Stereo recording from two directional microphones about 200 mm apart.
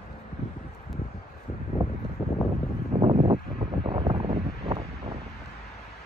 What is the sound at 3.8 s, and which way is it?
Wind, 30° right (ahead or behind).